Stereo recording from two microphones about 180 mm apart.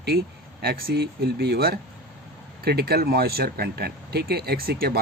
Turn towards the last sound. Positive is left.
turn(degrees=-60)  # may be behind; listen again after turning